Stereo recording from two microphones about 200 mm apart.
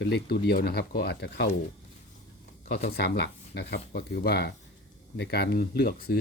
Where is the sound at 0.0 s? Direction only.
55° left (ahead or behind).